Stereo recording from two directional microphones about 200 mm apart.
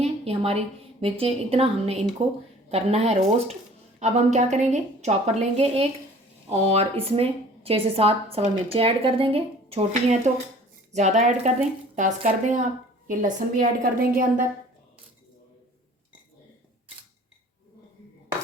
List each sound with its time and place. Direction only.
0.0 s a woman's voice: 30° right (ahead or behind)